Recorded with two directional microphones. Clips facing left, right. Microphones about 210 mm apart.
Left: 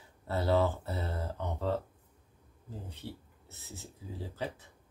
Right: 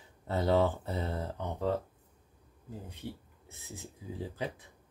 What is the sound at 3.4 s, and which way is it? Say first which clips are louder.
Speech: right 2 dB; 15° right (ahead or behind).